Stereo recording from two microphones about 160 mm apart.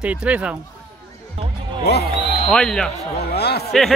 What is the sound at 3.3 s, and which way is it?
Speech, 85° left.